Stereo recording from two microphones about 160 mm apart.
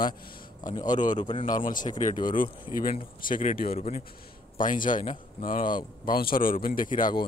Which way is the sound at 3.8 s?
45° left (ahead or behind).